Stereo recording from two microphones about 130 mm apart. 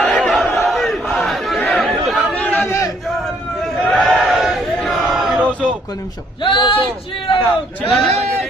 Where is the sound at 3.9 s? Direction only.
Centre (ahead or behind).